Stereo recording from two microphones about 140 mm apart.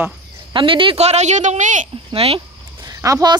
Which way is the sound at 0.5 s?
35° right (ahead or behind).